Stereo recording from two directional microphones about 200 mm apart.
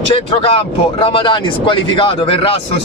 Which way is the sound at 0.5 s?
25° left (ahead or behind).